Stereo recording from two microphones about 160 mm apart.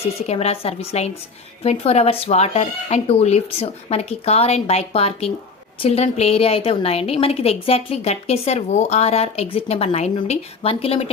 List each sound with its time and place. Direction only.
0.2 s a woman's voice: 40° left (ahead or behind)